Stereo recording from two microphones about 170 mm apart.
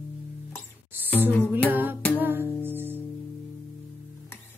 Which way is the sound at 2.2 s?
10° right (ahead or behind).